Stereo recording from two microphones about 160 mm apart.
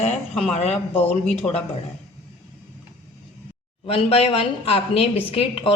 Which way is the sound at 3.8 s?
40° left (ahead or behind).